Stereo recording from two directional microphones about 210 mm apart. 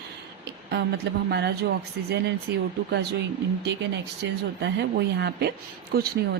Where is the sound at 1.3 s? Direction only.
50° right (ahead or behind).